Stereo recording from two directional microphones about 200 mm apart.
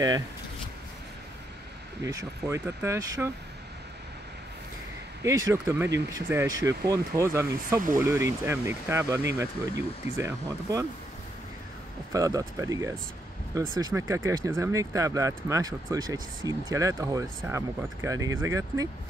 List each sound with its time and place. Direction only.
2.0 s speech: 15° right (ahead or behind)
5.2 s speech: 15° right (ahead or behind)
12.1 s speech: 15° right (ahead or behind)